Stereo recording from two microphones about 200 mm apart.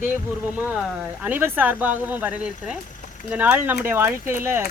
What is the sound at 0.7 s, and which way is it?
Speech, 5° right (ahead or behind).